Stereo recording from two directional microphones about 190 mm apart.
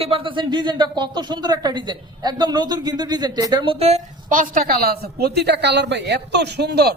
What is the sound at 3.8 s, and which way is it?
A woman's voice, 40° right (ahead or behind).